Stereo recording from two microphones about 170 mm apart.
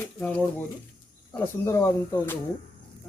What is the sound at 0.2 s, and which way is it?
A man's voice, 10° left (ahead or behind).